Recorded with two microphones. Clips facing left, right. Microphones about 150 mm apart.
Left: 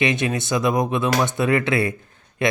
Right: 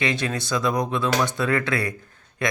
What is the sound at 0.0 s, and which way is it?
Speech, 20° left (ahead or behind).